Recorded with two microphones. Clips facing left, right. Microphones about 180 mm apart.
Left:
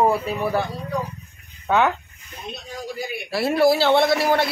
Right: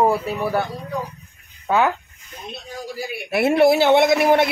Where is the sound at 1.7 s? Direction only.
5° right (ahead or behind).